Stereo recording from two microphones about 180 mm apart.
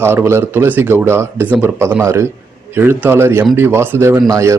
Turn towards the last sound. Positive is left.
turn(degrees=-15)  # may be behind; listen again after turning